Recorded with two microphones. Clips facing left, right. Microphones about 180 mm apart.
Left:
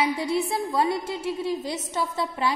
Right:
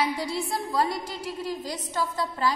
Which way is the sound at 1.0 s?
25° left (ahead or behind).